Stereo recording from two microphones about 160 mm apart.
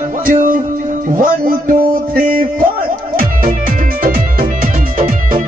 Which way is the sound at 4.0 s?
60° right (ahead or behind).